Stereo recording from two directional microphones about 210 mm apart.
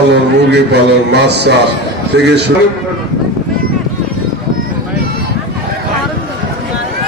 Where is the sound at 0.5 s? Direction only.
55° right (ahead or behind).